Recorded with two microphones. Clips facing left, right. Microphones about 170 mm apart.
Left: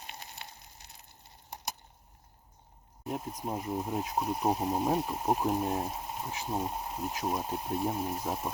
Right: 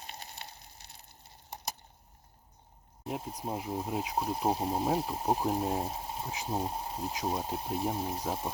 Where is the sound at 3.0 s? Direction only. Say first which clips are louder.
Left 1 dB; 30° right (ahead or behind).